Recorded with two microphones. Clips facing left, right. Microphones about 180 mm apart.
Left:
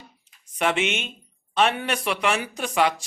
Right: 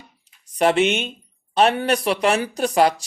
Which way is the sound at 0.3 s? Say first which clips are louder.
Even; 35° right (ahead or behind).